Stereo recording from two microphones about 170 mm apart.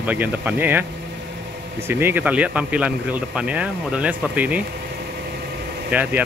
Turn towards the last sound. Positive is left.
turn(degrees=-10)  # may be behind; listen again after turning